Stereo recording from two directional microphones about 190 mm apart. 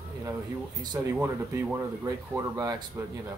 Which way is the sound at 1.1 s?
10° right (ahead or behind).